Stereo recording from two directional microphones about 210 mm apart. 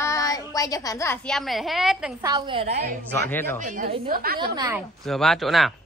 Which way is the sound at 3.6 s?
40° right (ahead or behind).